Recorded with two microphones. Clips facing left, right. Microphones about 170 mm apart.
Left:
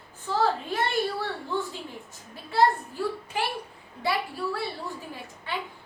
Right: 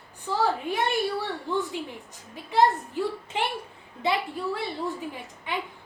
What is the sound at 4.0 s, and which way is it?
A child's voice, 20° right (ahead or behind).